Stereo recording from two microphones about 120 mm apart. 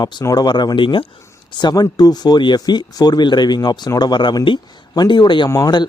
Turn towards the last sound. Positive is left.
turn(degrees=25)  # may be behind; listen again after turning